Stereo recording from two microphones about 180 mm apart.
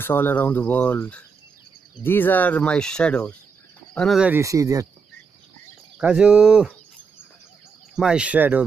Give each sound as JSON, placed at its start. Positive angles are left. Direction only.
{"t": 0.0, "sound": "speech", "side_deg": 10}
{"t": 4.4, "sound": "speech", "side_deg": -20}
{"t": 5.9, "sound": "speech", "side_deg": -5}
{"t": 8.0, "sound": "speech", "side_deg": -5}